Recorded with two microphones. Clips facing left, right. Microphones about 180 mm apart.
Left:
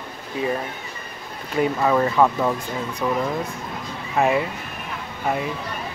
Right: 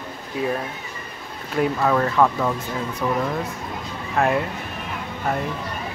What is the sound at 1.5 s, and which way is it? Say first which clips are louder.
Speech: left 1 dB; 5° left (ahead or behind).